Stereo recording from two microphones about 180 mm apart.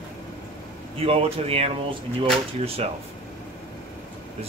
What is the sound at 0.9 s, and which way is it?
Speech, 35° right (ahead or behind).